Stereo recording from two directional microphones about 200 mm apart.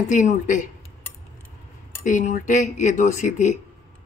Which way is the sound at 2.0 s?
40° left (ahead or behind).